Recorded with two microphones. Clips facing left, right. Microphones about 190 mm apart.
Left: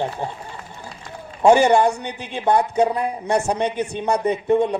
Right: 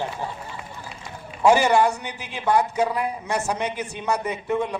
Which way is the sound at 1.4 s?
30° left (ahead or behind).